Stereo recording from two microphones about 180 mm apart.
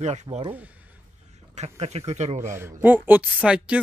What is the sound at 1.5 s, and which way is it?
Speech, 35° right (ahead or behind).